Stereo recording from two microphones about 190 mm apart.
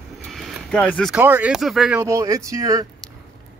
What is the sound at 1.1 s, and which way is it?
Speech, 10° right (ahead or behind).